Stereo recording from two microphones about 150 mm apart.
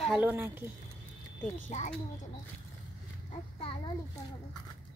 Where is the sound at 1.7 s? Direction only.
50° left (ahead or behind).